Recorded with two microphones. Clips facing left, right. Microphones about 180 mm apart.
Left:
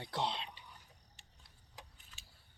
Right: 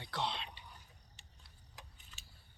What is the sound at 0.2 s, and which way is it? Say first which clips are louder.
Whispering: left 2 dB; 40° left (ahead or behind).